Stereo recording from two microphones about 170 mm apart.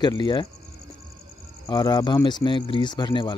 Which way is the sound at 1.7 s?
25° left (ahead or behind).